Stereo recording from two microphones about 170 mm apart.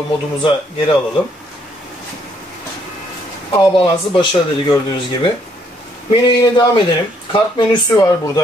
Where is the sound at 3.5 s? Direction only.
25° left (ahead or behind).